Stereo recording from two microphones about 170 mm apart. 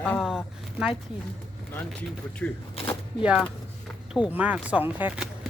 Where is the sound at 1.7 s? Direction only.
10° left (ahead or behind).